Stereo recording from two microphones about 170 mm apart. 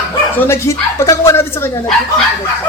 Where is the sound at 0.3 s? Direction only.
15° left (ahead or behind).